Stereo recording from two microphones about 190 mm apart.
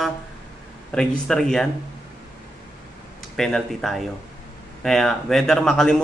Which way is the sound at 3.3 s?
Centre (ahead or behind).